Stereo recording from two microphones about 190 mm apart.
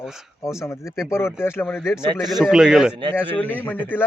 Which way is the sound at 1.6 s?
Centre (ahead or behind).